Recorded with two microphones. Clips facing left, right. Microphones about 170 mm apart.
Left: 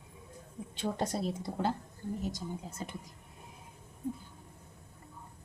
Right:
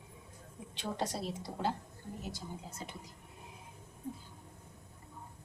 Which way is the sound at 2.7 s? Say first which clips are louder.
Left 4 dB; 50° left (ahead or behind).